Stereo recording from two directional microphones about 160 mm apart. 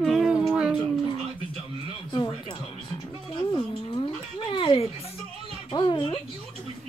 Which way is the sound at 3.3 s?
35° left (ahead or behind).